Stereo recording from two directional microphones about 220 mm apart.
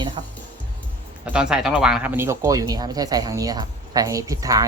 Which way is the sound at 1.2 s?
5° right (ahead or behind).